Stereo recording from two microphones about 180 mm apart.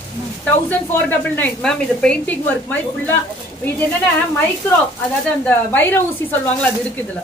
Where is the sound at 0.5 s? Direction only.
10° left (ahead or behind).